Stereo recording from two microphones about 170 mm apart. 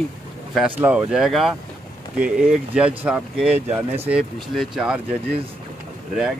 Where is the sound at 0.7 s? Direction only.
10° right (ahead or behind).